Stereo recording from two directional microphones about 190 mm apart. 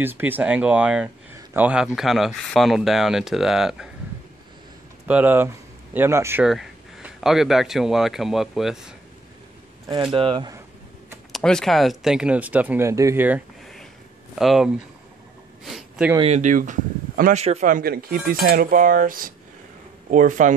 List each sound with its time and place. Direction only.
0.0 s speech: 10° right (ahead or behind)
5.0 s speech: 10° right (ahead or behind)
6.4 s speech: centre (ahead or behind)
10.1 s speech: 25° right (ahead or behind)
11.3 s speech: 5° left (ahead or behind)
14.4 s speech: centre (ahead or behind)
15.6 s a sound: centre (ahead or behind)
16.2 s speech: 35° right (ahead or behind)